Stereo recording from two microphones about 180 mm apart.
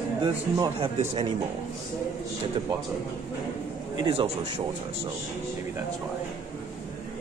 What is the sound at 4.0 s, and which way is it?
Speech, 25° right (ahead or behind).